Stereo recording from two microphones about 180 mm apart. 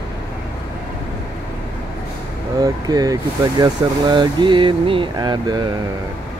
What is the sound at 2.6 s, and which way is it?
Speech, 20° right (ahead or behind).